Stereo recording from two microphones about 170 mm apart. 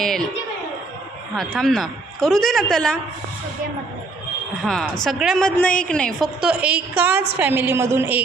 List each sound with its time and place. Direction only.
1.4 s a woman's voice: centre (ahead or behind)
4.6 s a woman's voice: 5° left (ahead or behind)